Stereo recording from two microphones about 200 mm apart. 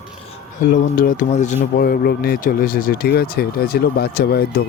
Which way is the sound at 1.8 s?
50° left (ahead or behind).